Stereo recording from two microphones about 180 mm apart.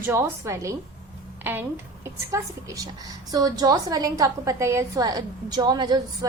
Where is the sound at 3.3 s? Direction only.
20° right (ahead or behind).